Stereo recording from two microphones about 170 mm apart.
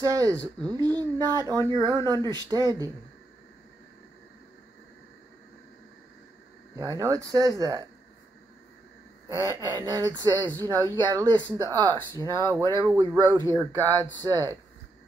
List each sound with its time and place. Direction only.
0.0 s speech: 20° right (ahead or behind)
6.7 s speech: 20° right (ahead or behind)
9.4 s speech: 20° right (ahead or behind)